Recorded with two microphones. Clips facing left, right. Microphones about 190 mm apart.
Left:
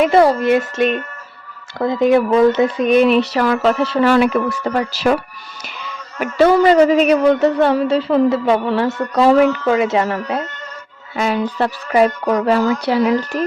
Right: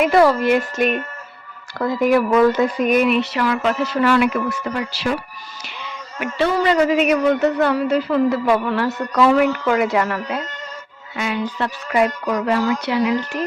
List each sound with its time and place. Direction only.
0.0 s speech: 25° left (ahead or behind); by 5.1 s 40° left (ahead or behind)
6.1 s speech: 40° left (ahead or behind)